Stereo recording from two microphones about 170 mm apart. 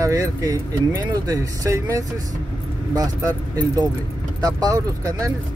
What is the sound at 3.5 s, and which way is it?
Speech, 25° right (ahead or behind).